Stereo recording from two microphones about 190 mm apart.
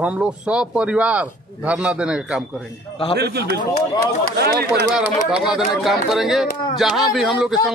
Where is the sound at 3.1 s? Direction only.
60° right (ahead or behind).